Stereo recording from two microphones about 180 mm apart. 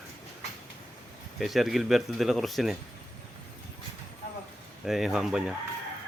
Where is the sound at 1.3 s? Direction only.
Centre (ahead or behind).